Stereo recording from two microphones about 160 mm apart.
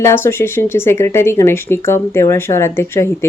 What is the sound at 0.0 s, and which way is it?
A woman's voice, 15° left (ahead or behind).